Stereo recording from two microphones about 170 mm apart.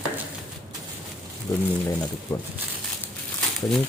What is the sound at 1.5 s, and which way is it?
Speech, 15° left (ahead or behind).